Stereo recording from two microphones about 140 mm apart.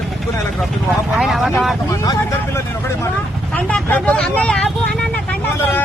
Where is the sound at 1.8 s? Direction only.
25° left (ahead or behind).